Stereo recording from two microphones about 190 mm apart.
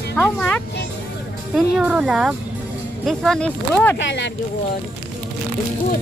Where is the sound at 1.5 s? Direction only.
5° right (ahead or behind).